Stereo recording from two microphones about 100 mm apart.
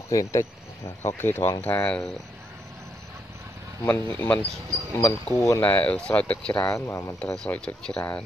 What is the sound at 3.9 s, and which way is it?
Speech, 15° left (ahead or behind).